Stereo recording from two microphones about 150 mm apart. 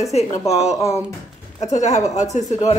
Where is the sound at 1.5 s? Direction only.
50° left (ahead or behind).